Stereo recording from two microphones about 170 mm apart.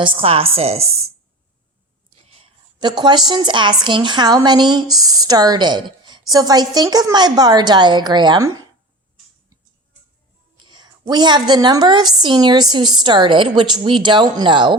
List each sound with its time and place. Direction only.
0.0 s speech: 30° right (ahead or behind)
2.1 s a woman's voice: 35° right (ahead or behind)
10.7 s a woman's voice: 25° right (ahead or behind)